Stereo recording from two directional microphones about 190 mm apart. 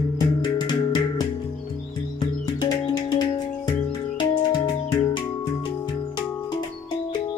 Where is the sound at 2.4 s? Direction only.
20° left (ahead or behind).